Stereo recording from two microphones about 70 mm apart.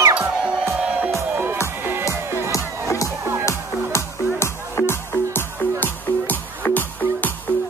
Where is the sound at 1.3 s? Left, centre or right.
Right.